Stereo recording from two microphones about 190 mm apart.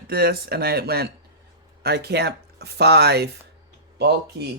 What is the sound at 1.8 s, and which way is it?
Speech, 60° right (ahead or behind).